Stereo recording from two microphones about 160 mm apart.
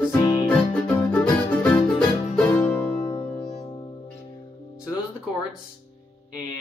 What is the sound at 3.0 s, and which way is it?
Music, 45° left (ahead or behind).